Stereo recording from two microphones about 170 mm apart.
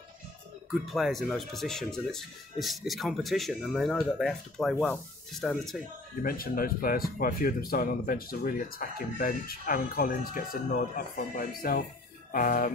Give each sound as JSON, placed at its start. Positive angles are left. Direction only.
{"t": 0.8, "sound": "speech", "side_deg": 0}
{"t": 6.2, "sound": "speech", "side_deg": 60}